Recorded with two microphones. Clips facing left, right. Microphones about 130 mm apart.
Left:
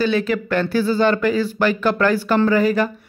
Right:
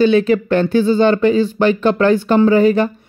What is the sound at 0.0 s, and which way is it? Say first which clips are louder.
Speech: right 7 dB; 30° right (ahead or behind).